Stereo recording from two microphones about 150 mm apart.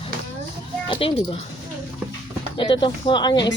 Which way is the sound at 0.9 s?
35° left (ahead or behind).